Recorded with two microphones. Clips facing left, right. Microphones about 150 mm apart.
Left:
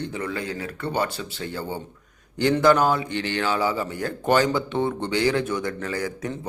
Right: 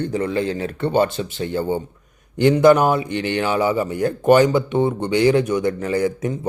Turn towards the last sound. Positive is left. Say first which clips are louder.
# right 8 dB
turn(degrees=-20)  # may be behind; listen again after turning